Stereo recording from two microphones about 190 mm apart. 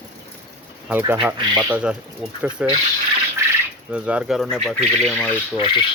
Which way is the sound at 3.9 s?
5° right (ahead or behind).